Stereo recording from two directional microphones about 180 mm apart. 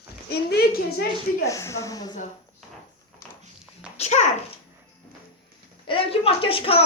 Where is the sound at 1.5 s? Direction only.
15° left (ahead or behind).